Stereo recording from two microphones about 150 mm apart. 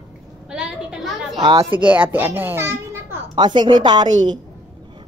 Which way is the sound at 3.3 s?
30° right (ahead or behind).